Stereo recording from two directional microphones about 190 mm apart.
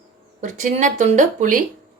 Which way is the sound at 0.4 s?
40° right (ahead or behind).